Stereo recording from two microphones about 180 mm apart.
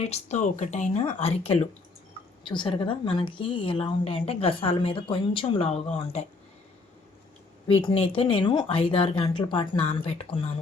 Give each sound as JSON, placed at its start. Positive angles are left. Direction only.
{"t": 0.0, "sound": "speech", "side_deg": 35}
{"t": 7.7, "sound": "speech", "side_deg": 25}